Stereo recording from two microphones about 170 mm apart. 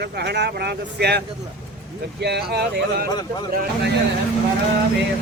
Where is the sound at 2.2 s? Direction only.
75° right (ahead or behind).